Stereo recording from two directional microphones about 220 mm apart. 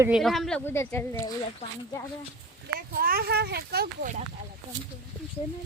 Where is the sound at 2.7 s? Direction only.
40° right (ahead or behind).